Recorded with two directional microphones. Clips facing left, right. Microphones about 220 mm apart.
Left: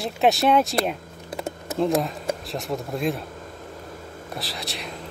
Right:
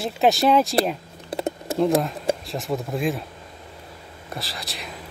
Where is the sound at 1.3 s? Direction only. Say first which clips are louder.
Right 5 dB; 35° right (ahead or behind).